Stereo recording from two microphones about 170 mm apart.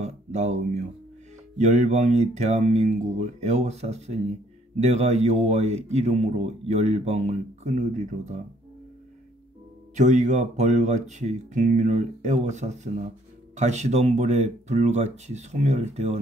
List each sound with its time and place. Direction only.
0.0 s speech: 40° right (ahead or behind)
9.9 s speech: 45° right (ahead or behind)